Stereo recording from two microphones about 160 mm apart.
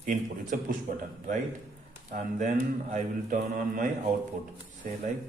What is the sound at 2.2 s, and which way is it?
Speech, 50° right (ahead or behind).